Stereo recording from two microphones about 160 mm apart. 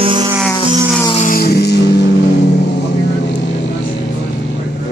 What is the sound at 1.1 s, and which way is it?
Music, 60° left (ahead or behind).